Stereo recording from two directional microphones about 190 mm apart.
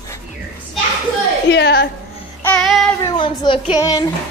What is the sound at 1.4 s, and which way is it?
Speech, 65° left (ahead or behind).